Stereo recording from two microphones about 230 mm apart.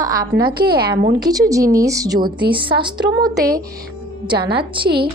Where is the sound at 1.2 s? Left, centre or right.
Centre.